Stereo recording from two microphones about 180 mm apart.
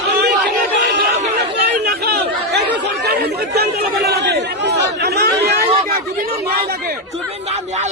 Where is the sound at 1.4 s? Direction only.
60° right (ahead or behind).